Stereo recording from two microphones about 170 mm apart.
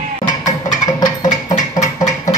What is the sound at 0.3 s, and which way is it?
Music, 45° left (ahead or behind).